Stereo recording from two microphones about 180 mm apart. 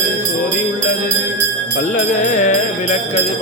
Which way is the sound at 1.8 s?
45° left (ahead or behind).